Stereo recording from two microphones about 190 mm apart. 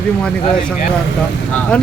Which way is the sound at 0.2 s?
5° left (ahead or behind).